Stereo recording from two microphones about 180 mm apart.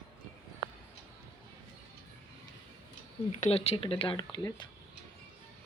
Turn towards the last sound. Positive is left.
turn(degrees=25)  # may be behind; listen again after turning